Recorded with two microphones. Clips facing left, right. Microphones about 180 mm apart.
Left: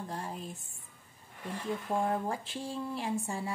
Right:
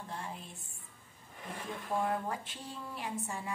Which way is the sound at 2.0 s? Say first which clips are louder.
Left 3 dB; 30° left (ahead or behind).